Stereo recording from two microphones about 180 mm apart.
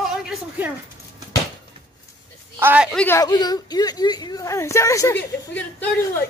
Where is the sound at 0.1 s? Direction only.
Centre (ahead or behind).